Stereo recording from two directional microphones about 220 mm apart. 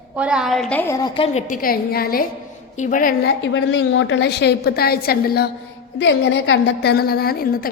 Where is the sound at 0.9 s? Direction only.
20° left (ahead or behind); by 3.1 s 35° left (ahead or behind).